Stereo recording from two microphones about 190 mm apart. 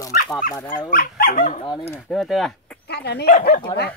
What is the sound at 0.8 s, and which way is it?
Speech, 50° left (ahead or behind).